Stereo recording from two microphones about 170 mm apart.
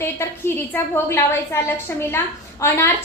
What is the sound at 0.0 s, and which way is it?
A woman's voice, 15° left (ahead or behind).